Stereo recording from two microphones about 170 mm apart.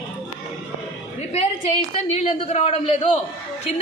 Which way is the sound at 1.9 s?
40° left (ahead or behind).